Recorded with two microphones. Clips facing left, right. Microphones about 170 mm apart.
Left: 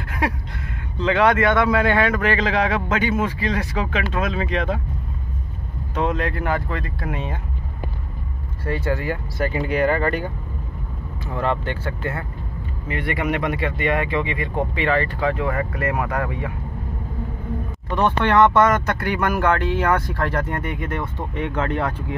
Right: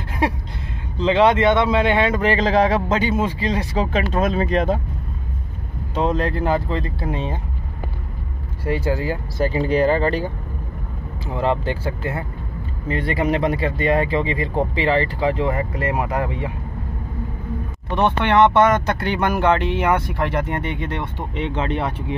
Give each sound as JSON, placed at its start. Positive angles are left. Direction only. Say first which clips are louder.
{"t": 0.9, "sound": "speech", "louder": "right 2 dB", "side_deg": -25}
{"t": 5.9, "sound": "speech", "louder": "right 2 dB", "side_deg": -30}
{"t": 8.6, "sound": "speech", "louder": "right 2 dB", "side_deg": -30}
{"t": 11.2, "sound": "speech", "louder": "right 3 dB", "side_deg": -30}
{"t": 17.9, "sound": "speech", "louder": "right 1 dB", "side_deg": -20}